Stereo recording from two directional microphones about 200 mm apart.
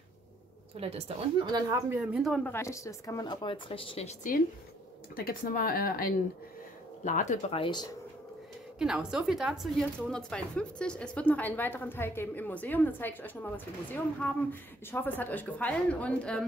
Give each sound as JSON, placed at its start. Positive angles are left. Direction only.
{"t": 0.7, "sound": "a woman's voice", "side_deg": -30}
{"t": 2.5, "sound": "speech", "side_deg": 15}
{"t": 5.1, "sound": "speech", "side_deg": 45}
{"t": 8.7, "sound": "a woman's voice", "side_deg": -5}